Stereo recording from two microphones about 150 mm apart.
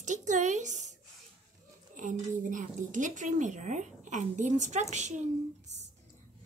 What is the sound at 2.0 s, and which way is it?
A woman's voice, 60° right (ahead or behind).